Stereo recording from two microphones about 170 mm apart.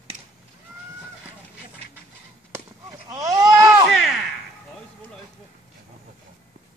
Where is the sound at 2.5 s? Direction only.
20° right (ahead or behind).